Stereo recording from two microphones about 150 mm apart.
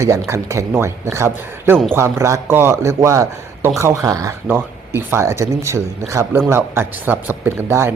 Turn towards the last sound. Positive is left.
turn(degrees=-15)  # may be behind; listen again after turning